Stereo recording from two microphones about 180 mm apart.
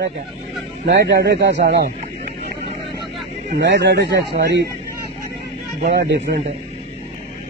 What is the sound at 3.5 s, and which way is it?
Speech, 75° right (ahead or behind).